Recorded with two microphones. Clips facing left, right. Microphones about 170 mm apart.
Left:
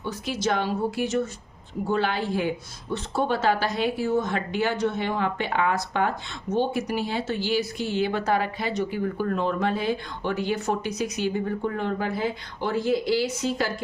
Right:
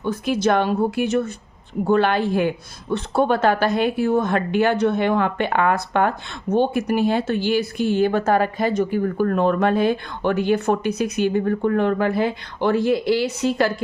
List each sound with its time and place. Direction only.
0.0 s speech: 55° right (ahead or behind)